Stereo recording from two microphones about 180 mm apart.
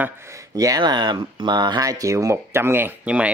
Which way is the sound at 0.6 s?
20° right (ahead or behind).